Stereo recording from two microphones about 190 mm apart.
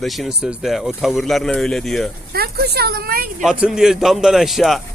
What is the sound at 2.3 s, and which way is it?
Speech, 55° right (ahead or behind).